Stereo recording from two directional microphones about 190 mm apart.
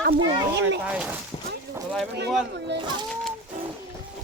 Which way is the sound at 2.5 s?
60° right (ahead or behind).